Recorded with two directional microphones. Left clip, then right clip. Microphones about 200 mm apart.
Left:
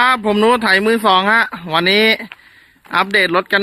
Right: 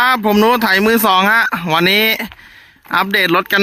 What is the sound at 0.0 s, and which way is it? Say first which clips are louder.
Speech: right 1 dB; 30° right (ahead or behind).